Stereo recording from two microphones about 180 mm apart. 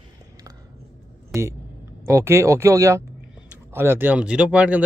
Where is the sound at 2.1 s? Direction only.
15° right (ahead or behind).